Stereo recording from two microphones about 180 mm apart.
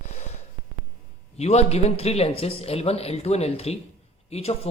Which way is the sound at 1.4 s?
35° left (ahead or behind).